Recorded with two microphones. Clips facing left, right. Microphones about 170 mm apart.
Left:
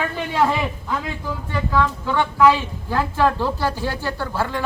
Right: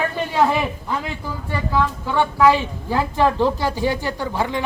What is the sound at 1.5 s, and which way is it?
A woman's voice, 10° right (ahead or behind).